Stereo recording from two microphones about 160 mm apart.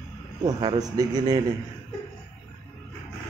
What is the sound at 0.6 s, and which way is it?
Speech, 25° right (ahead or behind).